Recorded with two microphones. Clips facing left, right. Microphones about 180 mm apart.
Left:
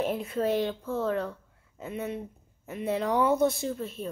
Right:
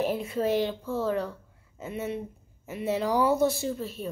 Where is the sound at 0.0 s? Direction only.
Centre (ahead or behind).